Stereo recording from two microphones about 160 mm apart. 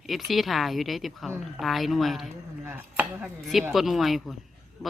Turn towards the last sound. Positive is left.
turn(degrees=-5)  # may be behind; listen again after turning